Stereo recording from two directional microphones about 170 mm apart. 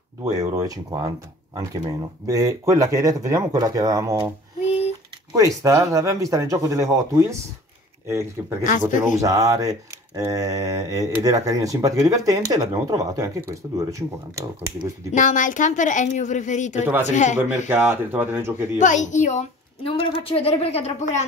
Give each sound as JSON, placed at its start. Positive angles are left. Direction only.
{"t": 0.2, "sound": "speech", "side_deg": -20}
{"t": 4.6, "sound": "typing", "side_deg": 40}
{"t": 5.3, "sound": "speech", "side_deg": -20}
{"t": 15.1, "sound": "a woman's voice", "side_deg": 50}
{"t": 17.6, "sound": "speech", "side_deg": -15}
{"t": 18.8, "sound": "a woman's voice", "side_deg": 45}
{"t": 19.9, "sound": "speech", "side_deg": 35}